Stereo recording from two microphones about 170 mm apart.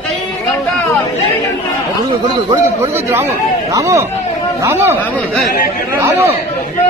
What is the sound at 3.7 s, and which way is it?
Speech, 20° right (ahead or behind).